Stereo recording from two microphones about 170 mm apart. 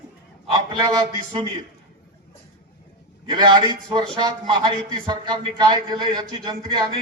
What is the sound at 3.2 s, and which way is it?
A man's voice, 25° right (ahead or behind).